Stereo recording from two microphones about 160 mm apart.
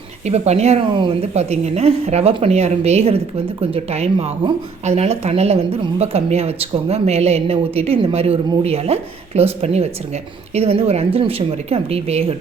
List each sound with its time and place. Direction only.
0.3 s speech: 45° right (ahead or behind)